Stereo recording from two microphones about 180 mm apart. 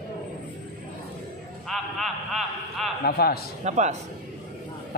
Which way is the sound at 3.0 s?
60° left (ahead or behind).